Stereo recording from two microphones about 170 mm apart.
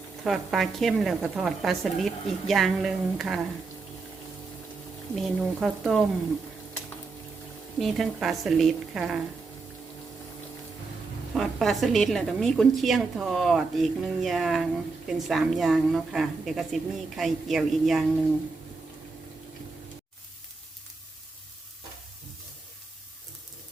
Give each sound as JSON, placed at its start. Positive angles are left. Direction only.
{"t": 0.3, "sound": "a woman's voice", "side_deg": 0}
{"t": 5.1, "sound": "a woman's voice", "side_deg": 0}
{"t": 7.8, "sound": "a woman's voice", "side_deg": 0}
{"t": 11.3, "sound": "a woman's voice", "side_deg": 0}